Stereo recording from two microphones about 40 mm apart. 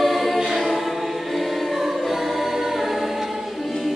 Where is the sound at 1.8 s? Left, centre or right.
Centre.